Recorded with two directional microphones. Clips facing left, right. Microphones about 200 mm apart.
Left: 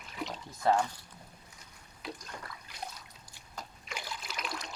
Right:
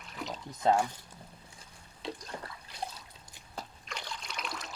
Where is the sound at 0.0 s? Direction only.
Centre (ahead or behind).